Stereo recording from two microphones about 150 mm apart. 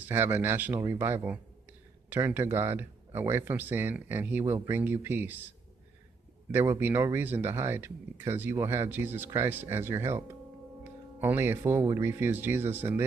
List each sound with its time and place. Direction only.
0.0 s speech: 15° right (ahead or behind)
6.5 s speech: 15° right (ahead or behind)